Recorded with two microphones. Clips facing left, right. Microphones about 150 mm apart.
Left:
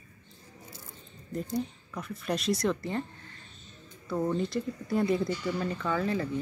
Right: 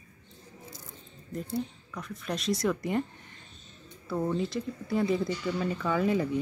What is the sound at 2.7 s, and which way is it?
Speech, 15° right (ahead or behind).